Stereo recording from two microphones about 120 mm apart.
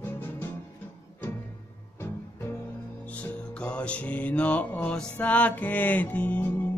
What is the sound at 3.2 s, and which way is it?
Music, 10° left (ahead or behind).